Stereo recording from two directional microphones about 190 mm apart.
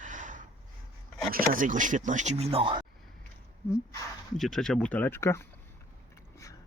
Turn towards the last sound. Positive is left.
turn(degrees=15)  # may be behind; listen again after turning